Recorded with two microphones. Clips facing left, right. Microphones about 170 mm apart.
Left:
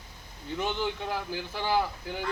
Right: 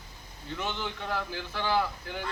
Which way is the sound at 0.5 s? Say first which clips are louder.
Left 4 dB; 15° left (ahead or behind).